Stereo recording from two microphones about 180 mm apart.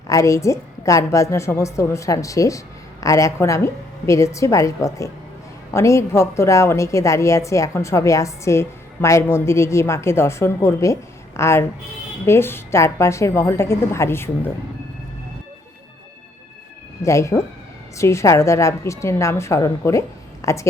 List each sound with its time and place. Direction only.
0.1 s a woman's voice: 15° left (ahead or behind)
17.0 s a woman's voice: 15° left (ahead or behind)